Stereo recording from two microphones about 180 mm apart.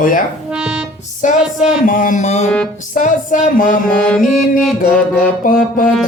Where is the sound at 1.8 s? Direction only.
50° left (ahead or behind).